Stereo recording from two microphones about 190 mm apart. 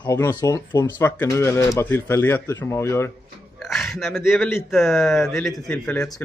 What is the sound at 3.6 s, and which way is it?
A man's voice, centre (ahead or behind).